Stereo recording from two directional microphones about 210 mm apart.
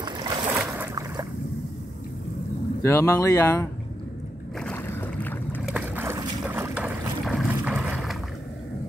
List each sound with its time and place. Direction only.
0.0 s boat: 20° right (ahead or behind)
2.8 s speech: 15° left (ahead or behind)
4.6 s boat: 5° left (ahead or behind)
5.6 s boat: 5° right (ahead or behind)